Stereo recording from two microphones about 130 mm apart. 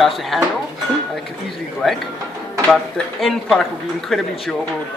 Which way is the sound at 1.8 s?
Centre (ahead or behind).